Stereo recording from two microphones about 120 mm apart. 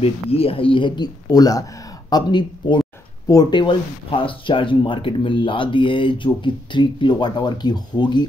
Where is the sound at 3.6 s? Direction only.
45° left (ahead or behind).